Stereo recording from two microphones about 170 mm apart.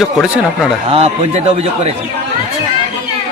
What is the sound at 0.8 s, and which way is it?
Speech, 35° right (ahead or behind).